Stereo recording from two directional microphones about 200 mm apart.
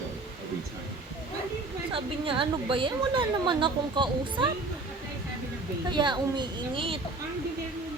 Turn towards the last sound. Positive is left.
turn(degrees=-25)  # may be behind; listen again after turning